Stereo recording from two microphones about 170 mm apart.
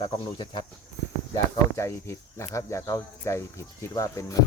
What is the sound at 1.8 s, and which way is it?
Speech, 15° left (ahead or behind).